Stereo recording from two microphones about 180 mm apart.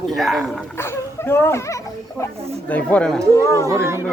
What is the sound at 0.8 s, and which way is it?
Speech, 15° left (ahead or behind).